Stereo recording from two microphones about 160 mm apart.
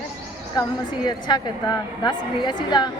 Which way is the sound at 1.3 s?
30° left (ahead or behind).